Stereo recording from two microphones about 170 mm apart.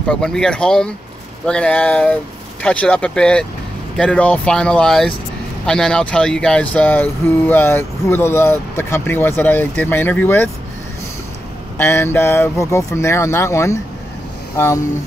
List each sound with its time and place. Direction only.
0.1 s speech: 5° left (ahead or behind)
11.8 s speech: 15° left (ahead or behind)